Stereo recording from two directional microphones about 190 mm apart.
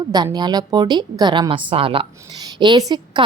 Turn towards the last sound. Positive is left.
turn(degrees=-20)  # may be behind; listen again after turning